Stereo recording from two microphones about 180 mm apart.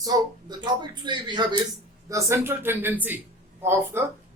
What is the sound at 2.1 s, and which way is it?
A man's voice, 15° right (ahead or behind).